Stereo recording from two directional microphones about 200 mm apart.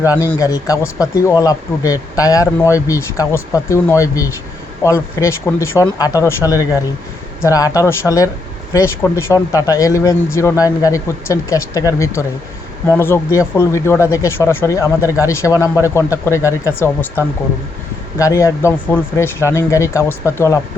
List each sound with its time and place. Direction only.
0.0 s speech: 15° left (ahead or behind)